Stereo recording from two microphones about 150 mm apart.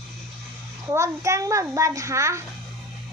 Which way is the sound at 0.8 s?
20° right (ahead or behind).